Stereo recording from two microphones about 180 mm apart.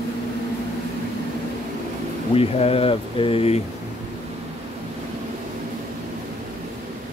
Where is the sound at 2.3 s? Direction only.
35° left (ahead or behind).